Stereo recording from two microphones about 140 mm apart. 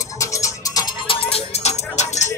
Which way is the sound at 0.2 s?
20° left (ahead or behind).